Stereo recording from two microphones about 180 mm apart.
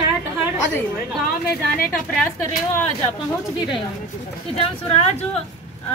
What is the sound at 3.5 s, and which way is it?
A woman's voice, 25° left (ahead or behind).